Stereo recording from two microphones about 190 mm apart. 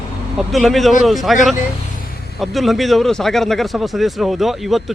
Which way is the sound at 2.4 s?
Centre (ahead or behind).